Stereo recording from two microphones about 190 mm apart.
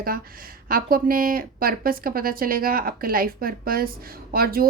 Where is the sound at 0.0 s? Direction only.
50° right (ahead or behind).